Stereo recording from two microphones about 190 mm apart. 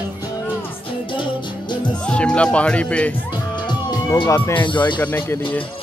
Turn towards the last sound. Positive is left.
turn(degrees=25)  # may be behind; listen again after turning